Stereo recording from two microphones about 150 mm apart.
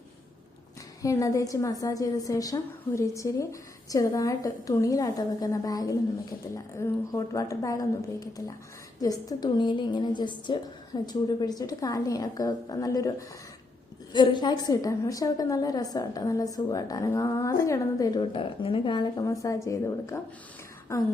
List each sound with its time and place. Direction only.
1.0 s a woman's voice: 20° left (ahead or behind)